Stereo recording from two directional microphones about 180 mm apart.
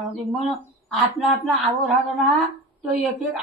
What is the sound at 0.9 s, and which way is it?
A woman's voice, centre (ahead or behind).